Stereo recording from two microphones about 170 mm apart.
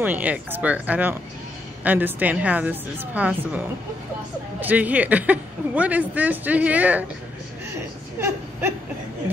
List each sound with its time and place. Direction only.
0.0 s a woman's voice: 10° right (ahead or behind)
8.2 s speech: 15° right (ahead or behind)